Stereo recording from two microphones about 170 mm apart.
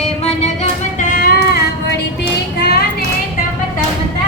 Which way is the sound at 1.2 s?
65° left (ahead or behind).